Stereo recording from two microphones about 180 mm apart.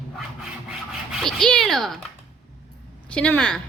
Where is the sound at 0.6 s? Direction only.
Centre (ahead or behind).